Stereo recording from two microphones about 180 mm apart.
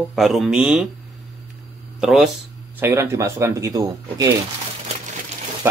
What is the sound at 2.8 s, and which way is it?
Speech, 15° right (ahead or behind).